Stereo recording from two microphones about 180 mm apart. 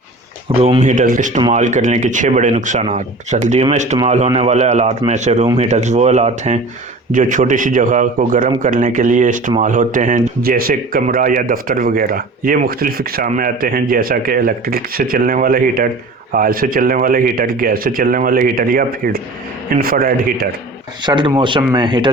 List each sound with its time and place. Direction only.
0.5 s speech: 35° right (ahead or behind); by 20.5 s 55° right (ahead or behind)
21.0 s speech: 25° right (ahead or behind)